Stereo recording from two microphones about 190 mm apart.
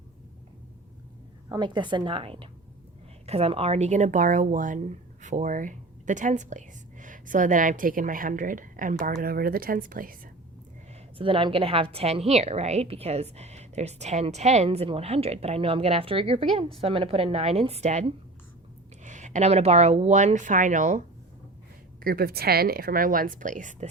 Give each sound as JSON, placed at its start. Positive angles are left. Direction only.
{"t": 1.5, "sound": "a woman's voice", "side_deg": -25}
{"t": 11.2, "sound": "a woman's voice", "side_deg": -25}
{"t": 19.0, "sound": "a woman's voice", "side_deg": -40}
{"t": 22.0, "sound": "speech", "side_deg": -50}